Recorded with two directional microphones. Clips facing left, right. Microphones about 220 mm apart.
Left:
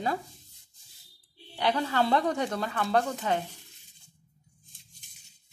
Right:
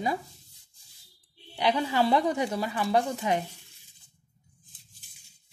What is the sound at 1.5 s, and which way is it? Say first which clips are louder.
Speech: right 1 dB; 10° right (ahead or behind).